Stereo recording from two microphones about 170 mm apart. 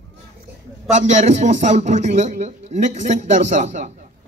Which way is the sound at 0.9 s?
45° right (ahead or behind).